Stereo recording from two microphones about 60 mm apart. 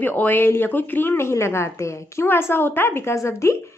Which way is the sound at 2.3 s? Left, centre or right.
Left.